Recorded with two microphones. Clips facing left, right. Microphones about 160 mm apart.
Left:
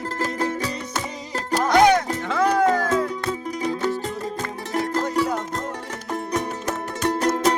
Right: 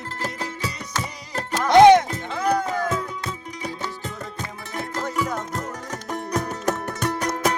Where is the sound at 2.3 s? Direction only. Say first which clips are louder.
Left 4 dB; 90° left.